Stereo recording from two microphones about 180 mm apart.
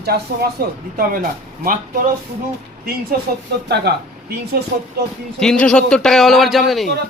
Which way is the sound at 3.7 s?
60° right (ahead or behind).